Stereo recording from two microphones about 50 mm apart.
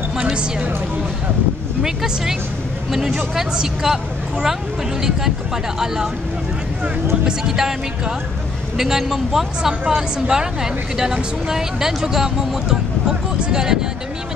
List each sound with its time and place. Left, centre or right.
0.2 s music: right
1.8 s speech: centre
7.2 s speech: centre